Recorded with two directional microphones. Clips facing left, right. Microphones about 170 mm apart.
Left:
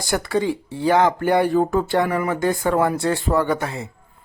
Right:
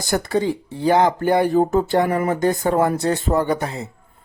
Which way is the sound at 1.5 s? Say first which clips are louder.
Right 2 dB; 20° right (ahead or behind).